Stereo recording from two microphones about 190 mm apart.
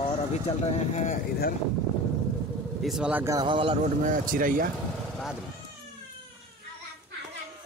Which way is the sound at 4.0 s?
45° right (ahead or behind).